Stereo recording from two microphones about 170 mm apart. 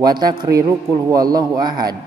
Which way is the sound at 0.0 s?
25° right (ahead or behind).